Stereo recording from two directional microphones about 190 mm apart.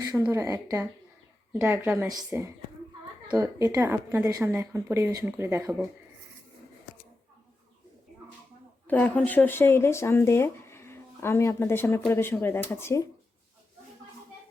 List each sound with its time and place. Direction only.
0.0 s a woman's voice: 20° right (ahead or behind)
8.9 s speech: 10° left (ahead or behind)